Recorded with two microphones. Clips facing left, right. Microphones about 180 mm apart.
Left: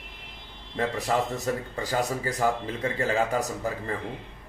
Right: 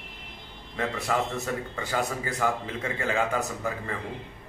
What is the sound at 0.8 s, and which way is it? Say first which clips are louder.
A man's voice: left 2 dB; 35° left (ahead or behind).